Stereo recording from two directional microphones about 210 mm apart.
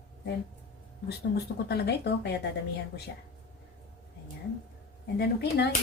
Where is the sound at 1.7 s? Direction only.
55° left (ahead or behind).